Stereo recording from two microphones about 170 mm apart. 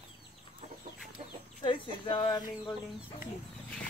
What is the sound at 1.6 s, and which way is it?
Speech, 30° left (ahead or behind).